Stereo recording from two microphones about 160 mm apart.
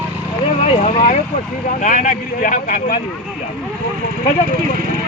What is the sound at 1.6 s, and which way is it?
Speech, 55° left (ahead or behind).